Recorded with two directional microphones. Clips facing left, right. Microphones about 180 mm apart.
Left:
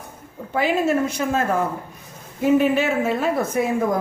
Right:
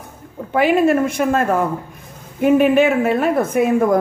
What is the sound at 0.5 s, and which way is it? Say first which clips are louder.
A woman's voice: right 6 dB; 55° right (ahead or behind).